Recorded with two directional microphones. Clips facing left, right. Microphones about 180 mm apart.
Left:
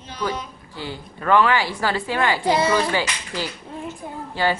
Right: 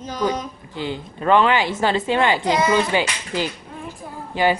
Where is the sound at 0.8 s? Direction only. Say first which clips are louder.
Right 5 dB; 20° right (ahead or behind).